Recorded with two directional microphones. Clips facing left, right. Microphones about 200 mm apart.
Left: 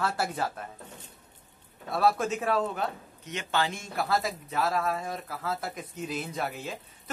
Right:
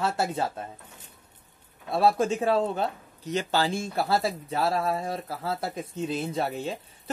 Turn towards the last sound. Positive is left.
turn(degrees=-30)  # may be behind; listen again after turning